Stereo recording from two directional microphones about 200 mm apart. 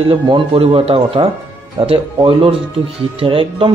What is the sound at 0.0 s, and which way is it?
Speech, 25° right (ahead or behind).